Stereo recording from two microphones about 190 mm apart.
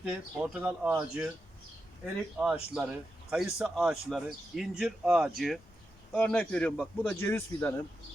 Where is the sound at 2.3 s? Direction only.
5° right (ahead or behind).